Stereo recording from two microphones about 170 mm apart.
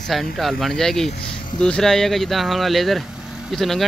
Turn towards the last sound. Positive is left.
turn(degrees=0)  # may be behind; listen again after turning